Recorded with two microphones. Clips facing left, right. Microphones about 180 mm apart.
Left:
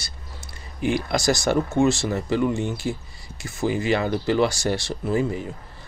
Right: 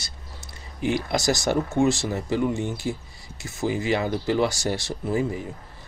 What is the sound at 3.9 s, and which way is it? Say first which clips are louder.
Speech: left 2 dB; 15° right (ahead or behind).